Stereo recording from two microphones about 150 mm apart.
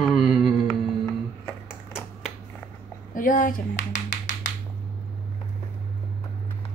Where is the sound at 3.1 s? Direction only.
65° left (ahead or behind).